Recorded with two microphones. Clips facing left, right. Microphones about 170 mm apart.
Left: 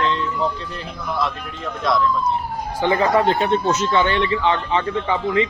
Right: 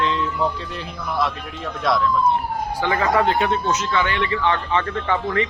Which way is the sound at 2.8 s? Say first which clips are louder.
Left 3 dB; 25° left (ahead or behind).